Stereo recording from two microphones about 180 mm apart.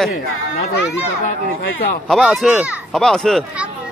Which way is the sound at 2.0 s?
Centre (ahead or behind).